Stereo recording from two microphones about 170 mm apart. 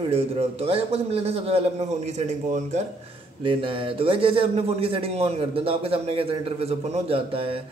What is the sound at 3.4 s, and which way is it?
Speech, 30° right (ahead or behind).